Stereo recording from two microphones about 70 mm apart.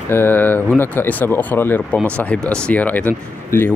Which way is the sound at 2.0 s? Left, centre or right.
Centre.